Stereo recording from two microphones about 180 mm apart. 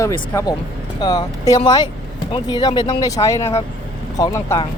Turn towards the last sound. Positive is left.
turn(degrees=20)  # may be behind; listen again after turning